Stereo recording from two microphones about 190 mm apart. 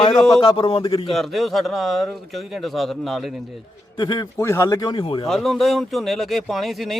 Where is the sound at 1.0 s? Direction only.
Centre (ahead or behind).